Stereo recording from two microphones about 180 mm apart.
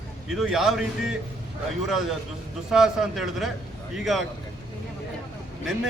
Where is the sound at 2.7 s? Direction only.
Centre (ahead or behind).